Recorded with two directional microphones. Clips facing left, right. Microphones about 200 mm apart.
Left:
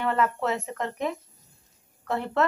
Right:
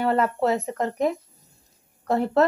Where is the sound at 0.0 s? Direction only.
35° right (ahead or behind).